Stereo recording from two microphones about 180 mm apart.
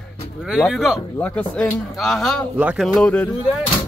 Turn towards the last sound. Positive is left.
turn(degrees=10)  # may be behind; listen again after turning